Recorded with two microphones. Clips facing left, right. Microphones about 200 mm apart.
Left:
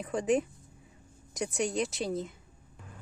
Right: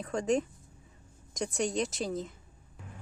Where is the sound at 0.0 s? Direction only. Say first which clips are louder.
Left 1 dB; 5° left (ahead or behind).